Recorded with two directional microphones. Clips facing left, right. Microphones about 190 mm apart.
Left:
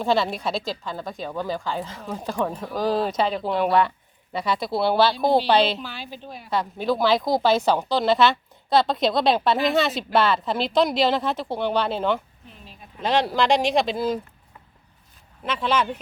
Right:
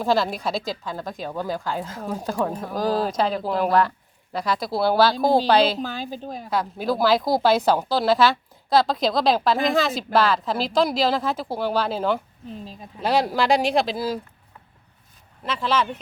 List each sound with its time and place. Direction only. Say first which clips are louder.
0.0 s speech: even; centre (ahead or behind)
5.6 s a woman's voice: right 3 dB; 45° right (ahead or behind)
6.5 s speech: left 1 dB; 5° right (ahead or behind)
15.5 s speech: even; 5° left (ahead or behind)